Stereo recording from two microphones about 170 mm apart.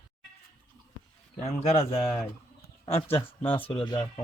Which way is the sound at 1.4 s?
35° left (ahead or behind).